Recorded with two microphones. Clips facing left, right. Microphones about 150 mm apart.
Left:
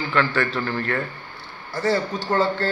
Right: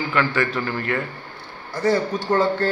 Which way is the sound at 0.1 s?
10° right (ahead or behind).